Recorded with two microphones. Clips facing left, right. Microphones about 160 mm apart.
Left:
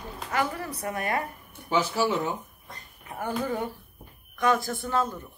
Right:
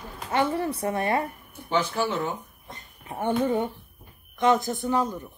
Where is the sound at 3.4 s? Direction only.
25° right (ahead or behind).